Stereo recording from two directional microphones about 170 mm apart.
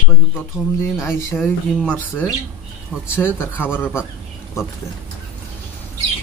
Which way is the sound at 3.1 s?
10° left (ahead or behind).